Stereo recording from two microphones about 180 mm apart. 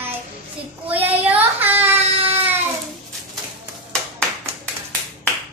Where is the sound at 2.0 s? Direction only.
35° right (ahead or behind).